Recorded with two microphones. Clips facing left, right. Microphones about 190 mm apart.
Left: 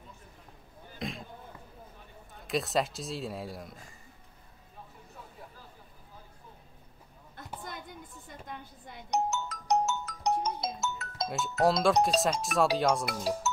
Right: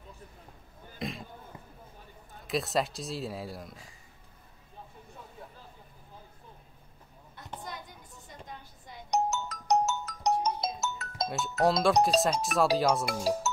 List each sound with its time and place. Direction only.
0.9 s a sound: centre (ahead or behind)
2.4 s speech: centre (ahead or behind)
9.1 s music: 40° right (ahead or behind)
11.2 s speech: centre (ahead or behind)